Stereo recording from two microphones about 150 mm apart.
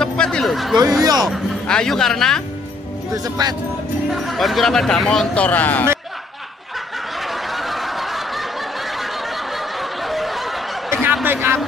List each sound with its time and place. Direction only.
0.0 s a sound: 5° left (ahead or behind)
0.7 s speech: 25° right (ahead or behind)
1.3 s speech: 5° left (ahead or behind)
3.4 s speech: 25° right (ahead or behind)
4.1 s speech: centre (ahead or behind)
7.2 s snicker: centre (ahead or behind)
10.9 s a sound: 10° right (ahead or behind)